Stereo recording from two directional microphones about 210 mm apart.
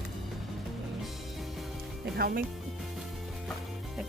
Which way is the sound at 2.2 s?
45° right (ahead or behind).